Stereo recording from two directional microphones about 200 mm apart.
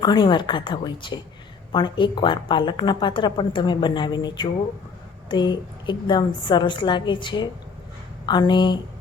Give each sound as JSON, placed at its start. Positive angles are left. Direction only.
{"t": 0.0, "sound": "a woman's voice", "side_deg": 20}